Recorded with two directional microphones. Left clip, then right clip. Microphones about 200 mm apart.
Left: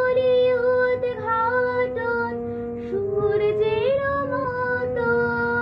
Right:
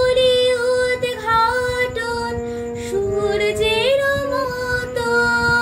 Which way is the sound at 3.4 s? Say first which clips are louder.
Right 3 dB; 15° right (ahead or behind).